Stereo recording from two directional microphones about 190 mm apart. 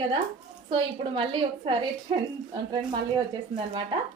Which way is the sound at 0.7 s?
25° right (ahead or behind).